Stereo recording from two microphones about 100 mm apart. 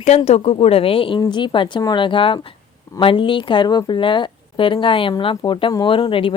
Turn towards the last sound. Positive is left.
turn(degrees=60)  # may be behind; listen again after turning